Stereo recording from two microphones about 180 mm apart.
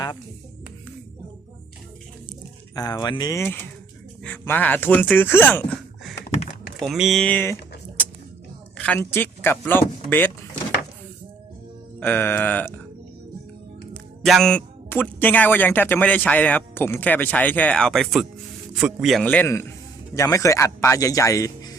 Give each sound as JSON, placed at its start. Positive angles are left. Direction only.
{"t": 2.7, "sound": "speech", "side_deg": 20}
{"t": 6.7, "sound": "speech", "side_deg": 0}
{"t": 8.8, "sound": "speech", "side_deg": 10}
{"t": 11.9, "sound": "speech", "side_deg": 10}
{"t": 13.9, "sound": "speech", "side_deg": 0}